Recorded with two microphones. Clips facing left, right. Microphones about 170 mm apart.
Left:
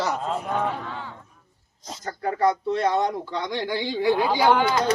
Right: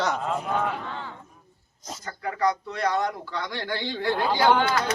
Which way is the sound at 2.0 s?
35° left (ahead or behind).